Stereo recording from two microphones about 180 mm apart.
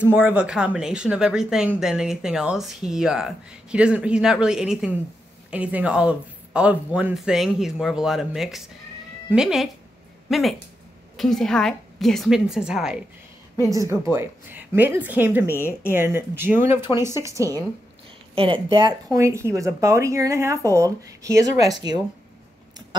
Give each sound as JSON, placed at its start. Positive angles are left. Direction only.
{"t": 0.0, "sound": "speech", "side_deg": -10}
{"t": 14.1, "sound": "speech", "side_deg": -10}
{"t": 15.5, "sound": "a woman's voice", "side_deg": 15}
{"t": 15.9, "sound": "speech", "side_deg": -15}
{"t": 18.3, "sound": "speech", "side_deg": -30}